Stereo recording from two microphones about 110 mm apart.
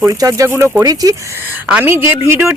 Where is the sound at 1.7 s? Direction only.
20° right (ahead or behind).